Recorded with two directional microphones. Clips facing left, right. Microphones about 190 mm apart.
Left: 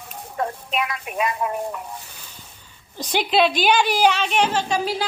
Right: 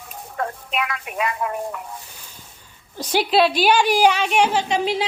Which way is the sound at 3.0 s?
5° right (ahead or behind).